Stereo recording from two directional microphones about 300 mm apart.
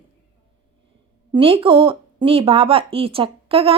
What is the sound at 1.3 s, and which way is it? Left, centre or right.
Speech, centre.